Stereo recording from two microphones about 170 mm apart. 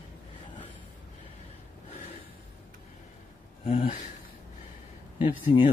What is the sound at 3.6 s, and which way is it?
Speech, 35° left (ahead or behind).